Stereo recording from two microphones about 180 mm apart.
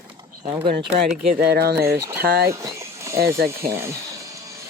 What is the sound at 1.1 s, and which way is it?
Speech, 55° right (ahead or behind).